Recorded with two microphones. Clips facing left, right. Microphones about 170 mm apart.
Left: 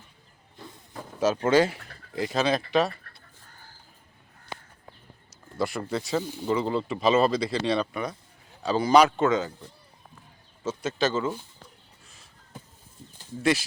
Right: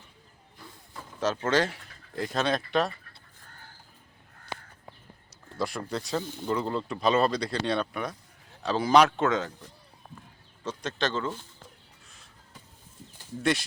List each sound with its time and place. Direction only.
1.2 s speech: 10° left (ahead or behind)
5.5 s speech: centre (ahead or behind)
12.0 s crow: centre (ahead or behind)
13.4 s speech: centre (ahead or behind)